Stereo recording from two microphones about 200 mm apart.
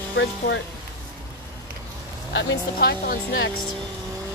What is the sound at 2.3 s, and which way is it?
Speech, 55° left (ahead or behind).